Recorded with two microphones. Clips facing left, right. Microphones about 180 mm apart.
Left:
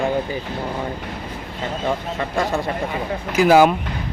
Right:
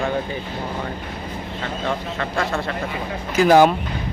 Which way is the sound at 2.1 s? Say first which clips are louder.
Left 2 dB; 15° left (ahead or behind).